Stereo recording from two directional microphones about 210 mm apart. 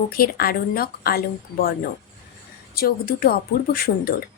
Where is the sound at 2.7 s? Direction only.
45° left (ahead or behind).